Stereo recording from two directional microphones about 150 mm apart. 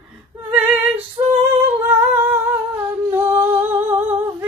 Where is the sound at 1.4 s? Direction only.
15° right (ahead or behind).